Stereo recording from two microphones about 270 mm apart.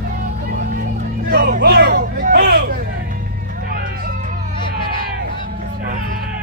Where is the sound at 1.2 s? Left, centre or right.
Right.